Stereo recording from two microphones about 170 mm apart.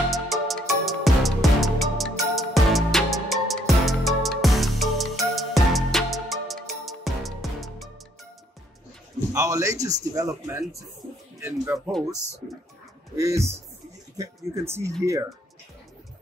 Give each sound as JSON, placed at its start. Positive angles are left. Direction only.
{"t": 0.1, "sound": "music", "side_deg": 0}
{"t": 9.3, "sound": "a sound", "side_deg": -20}
{"t": 9.8, "sound": "speech", "side_deg": -20}
{"t": 13.2, "sound": "speech", "side_deg": -15}